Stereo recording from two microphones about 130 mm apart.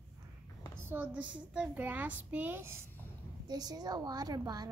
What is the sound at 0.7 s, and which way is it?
A woman's voice, 15° right (ahead or behind).